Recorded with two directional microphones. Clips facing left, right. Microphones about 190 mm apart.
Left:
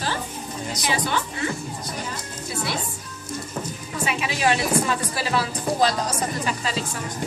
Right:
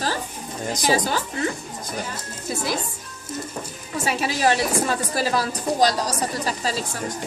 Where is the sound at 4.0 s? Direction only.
40° right (ahead or behind).